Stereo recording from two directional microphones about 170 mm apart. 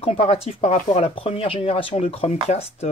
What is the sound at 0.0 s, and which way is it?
Speech, 35° left (ahead or behind).